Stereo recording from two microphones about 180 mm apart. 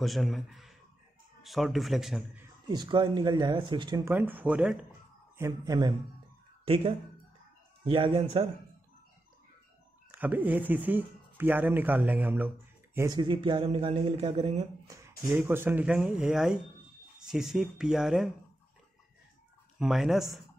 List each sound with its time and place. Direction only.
0.0 s speech: centre (ahead or behind)
2.7 s speech: 25° right (ahead or behind)
4.1 s speech: 10° right (ahead or behind)
5.4 s speech: 20° right (ahead or behind)
6.6 s a man's voice: 30° right (ahead or behind)
10.1 s speech: 10° right (ahead or behind); by 14.7 s 35° right (ahead or behind)
15.0 s speech: 15° right (ahead or behind)
19.8 s speech: centre (ahead or behind)